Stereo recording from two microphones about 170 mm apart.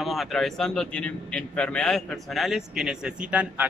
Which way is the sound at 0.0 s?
Centre (ahead or behind).